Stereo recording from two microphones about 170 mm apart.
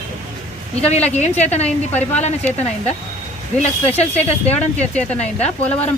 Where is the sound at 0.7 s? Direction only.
40° left (ahead or behind).